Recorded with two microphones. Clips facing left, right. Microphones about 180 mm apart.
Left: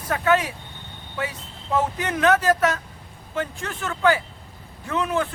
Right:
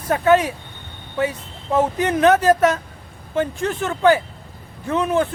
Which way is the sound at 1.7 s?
20° right (ahead or behind).